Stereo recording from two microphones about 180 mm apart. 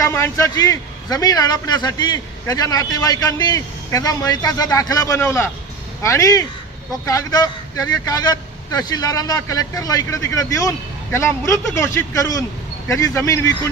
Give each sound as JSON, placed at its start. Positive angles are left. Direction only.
{"t": 0.0, "sound": "a man's voice", "side_deg": 15}